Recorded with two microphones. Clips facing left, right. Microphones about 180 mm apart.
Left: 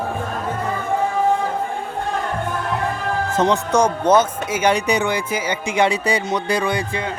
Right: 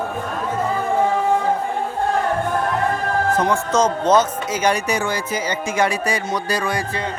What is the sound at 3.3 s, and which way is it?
Speech, 25° left (ahead or behind).